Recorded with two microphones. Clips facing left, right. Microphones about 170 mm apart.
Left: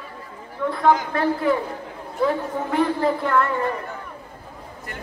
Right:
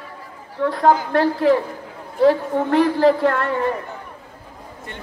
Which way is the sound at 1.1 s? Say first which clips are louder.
Right 5 dB; 90° right.